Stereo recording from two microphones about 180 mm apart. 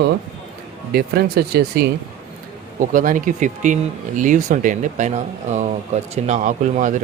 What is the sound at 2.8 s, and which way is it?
Speech, 45° right (ahead or behind).